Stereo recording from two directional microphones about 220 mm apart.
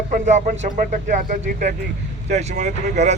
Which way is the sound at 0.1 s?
35° right (ahead or behind).